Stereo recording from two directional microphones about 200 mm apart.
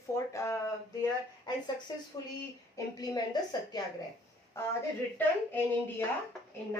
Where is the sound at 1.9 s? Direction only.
20° left (ahead or behind).